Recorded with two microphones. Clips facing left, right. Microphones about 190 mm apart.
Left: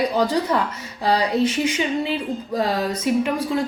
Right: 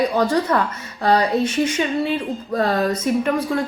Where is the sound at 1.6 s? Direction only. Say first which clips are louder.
Right 2 dB; 15° left (ahead or behind).